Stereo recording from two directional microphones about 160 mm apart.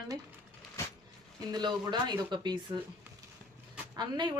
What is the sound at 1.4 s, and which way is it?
Speech, 25° right (ahead or behind).